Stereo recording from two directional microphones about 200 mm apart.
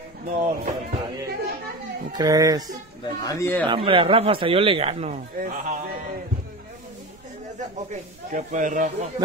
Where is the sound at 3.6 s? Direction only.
25° right (ahead or behind).